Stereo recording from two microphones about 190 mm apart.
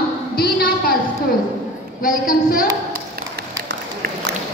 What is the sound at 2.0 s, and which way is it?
Speech, 45° left (ahead or behind).